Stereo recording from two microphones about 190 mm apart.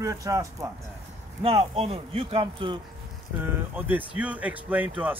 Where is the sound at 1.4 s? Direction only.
30° right (ahead or behind).